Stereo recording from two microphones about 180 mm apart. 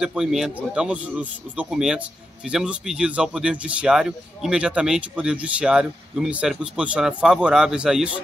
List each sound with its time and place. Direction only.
0.0 s a man's voice: 5° right (ahead or behind)